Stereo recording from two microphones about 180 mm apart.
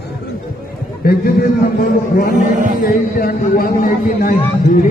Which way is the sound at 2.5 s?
45° right (ahead or behind).